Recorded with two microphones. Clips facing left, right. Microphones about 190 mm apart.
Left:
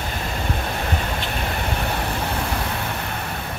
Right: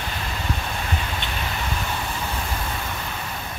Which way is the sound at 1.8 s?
65° left (ahead or behind).